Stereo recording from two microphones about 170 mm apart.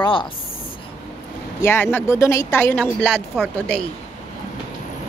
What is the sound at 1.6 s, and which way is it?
Speech, 15° left (ahead or behind).